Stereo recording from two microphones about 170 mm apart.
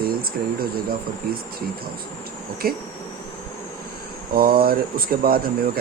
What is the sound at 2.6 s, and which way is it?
Speech, 60° right (ahead or behind).